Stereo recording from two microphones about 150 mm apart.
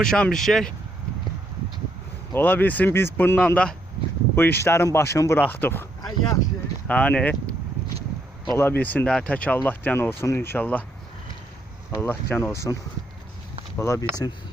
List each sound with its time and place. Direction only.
0.0 s speech: 5° left (ahead or behind)
2.3 s speech: 10° left (ahead or behind)
6.8 s speech: 10° left (ahead or behind)
8.5 s speech: 15° left (ahead or behind)
12.0 s speech: 15° left (ahead or behind)
13.7 s speech: 20° left (ahead or behind)